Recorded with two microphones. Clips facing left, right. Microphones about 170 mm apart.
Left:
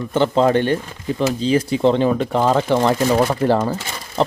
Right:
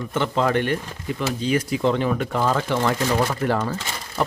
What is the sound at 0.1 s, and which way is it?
Speech, 30° left (ahead or behind).